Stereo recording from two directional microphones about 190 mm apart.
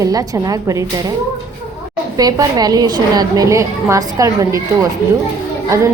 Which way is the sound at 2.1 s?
20° right (ahead or behind).